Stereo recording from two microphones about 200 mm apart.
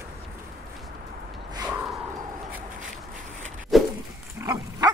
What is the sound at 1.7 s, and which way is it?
Gasp, 5° right (ahead or behind).